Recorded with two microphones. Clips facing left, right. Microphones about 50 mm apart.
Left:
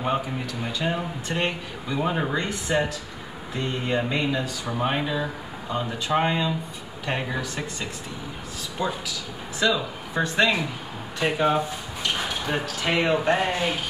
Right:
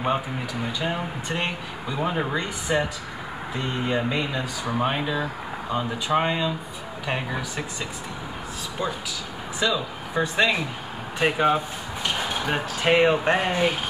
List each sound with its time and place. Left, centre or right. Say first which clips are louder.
0.0 s speech: right 1 dB; centre
10.2 s speech: left 1 dB; centre